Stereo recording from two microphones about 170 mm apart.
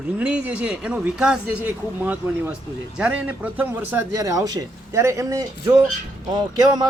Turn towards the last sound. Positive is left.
turn(degrees=-25)  # may be behind; listen again after turning